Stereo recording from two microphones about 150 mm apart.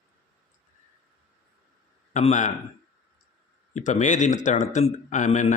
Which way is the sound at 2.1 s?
55° left (ahead or behind).